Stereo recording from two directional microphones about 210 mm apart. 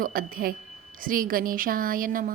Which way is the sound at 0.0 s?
45° right (ahead or behind).